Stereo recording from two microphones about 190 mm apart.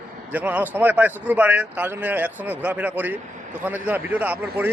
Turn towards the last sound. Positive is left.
turn(degrees=-10)  # may be behind; listen again after turning